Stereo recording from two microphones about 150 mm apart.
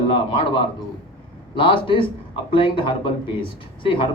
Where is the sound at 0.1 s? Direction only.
35° left (ahead or behind).